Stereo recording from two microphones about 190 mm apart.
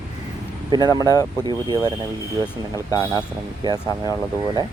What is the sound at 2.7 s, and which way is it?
Speech, 15° left (ahead or behind).